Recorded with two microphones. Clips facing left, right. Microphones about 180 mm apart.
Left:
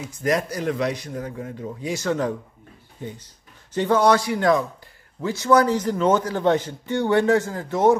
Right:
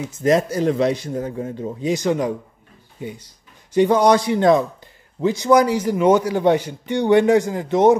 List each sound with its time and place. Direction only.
0.0 s a man's voice: 25° right (ahead or behind)